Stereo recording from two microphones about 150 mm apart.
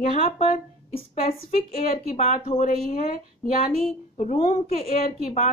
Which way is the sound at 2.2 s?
55° left (ahead or behind).